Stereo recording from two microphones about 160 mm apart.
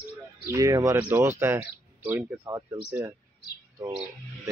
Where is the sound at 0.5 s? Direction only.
20° right (ahead or behind).